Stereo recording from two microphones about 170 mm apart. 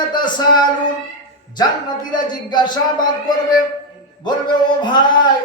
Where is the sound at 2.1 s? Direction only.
25° left (ahead or behind).